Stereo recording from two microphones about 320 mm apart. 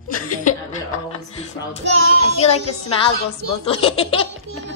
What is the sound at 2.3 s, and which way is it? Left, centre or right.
A woman's voice, centre.